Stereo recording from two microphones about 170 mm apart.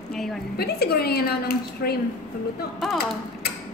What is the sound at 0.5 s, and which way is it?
A woman's voice, 70° left (ahead or behind).